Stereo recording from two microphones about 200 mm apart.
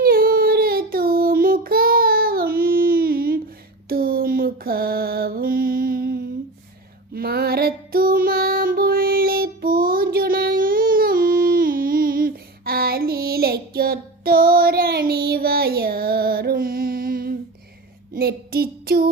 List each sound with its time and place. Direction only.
0.0 s child singing: 45° right (ahead or behind)
3.8 s mantra: 50° right (ahead or behind)
7.1 s music: 50° right (ahead or behind)
18.1 s child singing: 50° right (ahead or behind)